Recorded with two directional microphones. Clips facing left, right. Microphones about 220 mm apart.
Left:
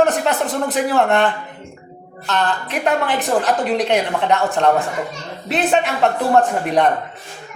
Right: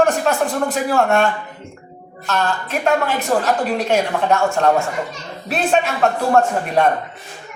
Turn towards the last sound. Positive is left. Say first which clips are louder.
# even
turn(degrees=20)  # may be behind; listen again after turning